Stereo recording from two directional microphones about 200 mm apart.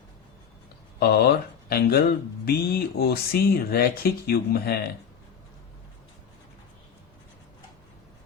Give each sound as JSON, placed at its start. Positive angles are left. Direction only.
{"t": 0.9, "sound": "speech", "side_deg": 50}